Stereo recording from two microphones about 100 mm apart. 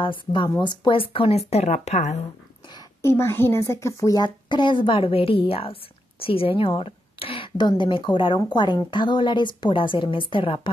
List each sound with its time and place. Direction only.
0.0 s speech: 55° left (ahead or behind)
1.5 s speech: 90° left
3.0 s a woman's voice: 25° left (ahead or behind)
4.5 s speech: 55° left (ahead or behind)
6.6 s a sound: 65° left (ahead or behind)
7.5 s a woman's voice: 50° left (ahead or behind)